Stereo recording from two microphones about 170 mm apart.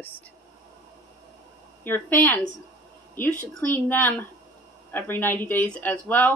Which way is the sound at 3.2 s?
10° left (ahead or behind).